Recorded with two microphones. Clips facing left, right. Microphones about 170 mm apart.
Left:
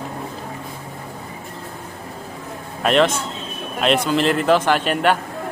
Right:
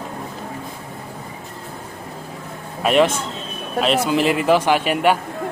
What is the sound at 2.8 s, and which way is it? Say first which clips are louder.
Speech: right 1 dB; 10° right (ahead or behind).